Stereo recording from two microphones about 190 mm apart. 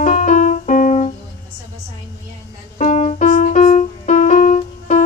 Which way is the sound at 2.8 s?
40° left (ahead or behind).